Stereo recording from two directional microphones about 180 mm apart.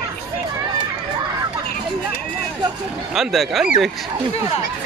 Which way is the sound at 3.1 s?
Centre (ahead or behind).